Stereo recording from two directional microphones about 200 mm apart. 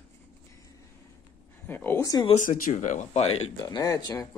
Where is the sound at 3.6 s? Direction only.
20° left (ahead or behind).